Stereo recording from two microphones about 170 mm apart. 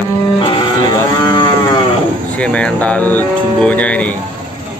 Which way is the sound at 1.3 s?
25° left (ahead or behind).